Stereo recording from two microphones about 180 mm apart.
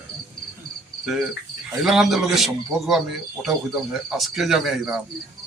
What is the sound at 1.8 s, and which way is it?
A man's voice, centre (ahead or behind).